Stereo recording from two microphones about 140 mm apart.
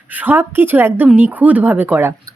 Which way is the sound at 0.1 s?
15° right (ahead or behind).